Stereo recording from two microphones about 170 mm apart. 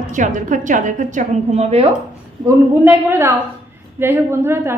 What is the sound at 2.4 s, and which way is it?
A woman's voice, 15° right (ahead or behind).